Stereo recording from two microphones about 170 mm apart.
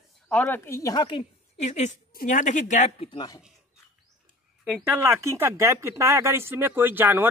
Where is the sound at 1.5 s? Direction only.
45° left (ahead or behind).